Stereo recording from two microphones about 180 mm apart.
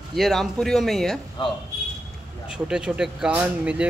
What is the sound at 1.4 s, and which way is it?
Speech, 25° left (ahead or behind).